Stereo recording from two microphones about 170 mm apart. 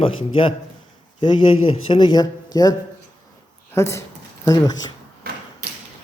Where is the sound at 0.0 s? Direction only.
30° left (ahead or behind).